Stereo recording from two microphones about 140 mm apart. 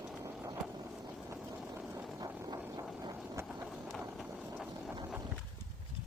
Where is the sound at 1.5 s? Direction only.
10° right (ahead or behind).